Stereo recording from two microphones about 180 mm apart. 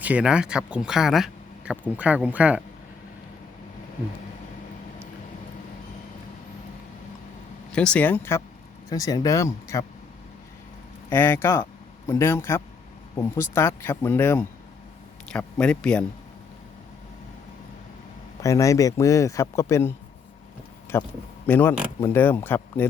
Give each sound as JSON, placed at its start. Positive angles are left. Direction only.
{"t": 0.0, "sound": "speech", "side_deg": -5}
{"t": 7.7, "sound": "speech", "side_deg": 5}
{"t": 11.1, "sound": "a man's voice", "side_deg": 15}
{"t": 18.4, "sound": "speech", "side_deg": 15}
{"t": 20.9, "sound": "speech", "side_deg": 15}